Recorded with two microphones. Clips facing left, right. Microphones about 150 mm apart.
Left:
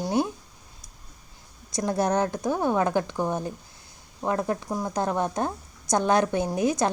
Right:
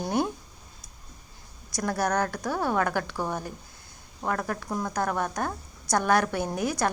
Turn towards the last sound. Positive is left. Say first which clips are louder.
# left 4 dB
turn(degrees=20)  # may be behind; listen again after turning